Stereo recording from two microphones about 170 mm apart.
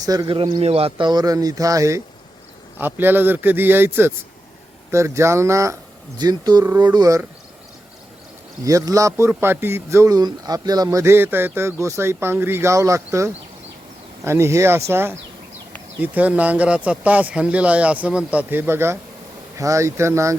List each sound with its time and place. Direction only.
0.0 s speech: 20° right (ahead or behind)
8.6 s speech: 20° right (ahead or behind)